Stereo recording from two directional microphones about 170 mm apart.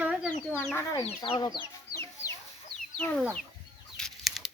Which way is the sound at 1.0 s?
30° left (ahead or behind).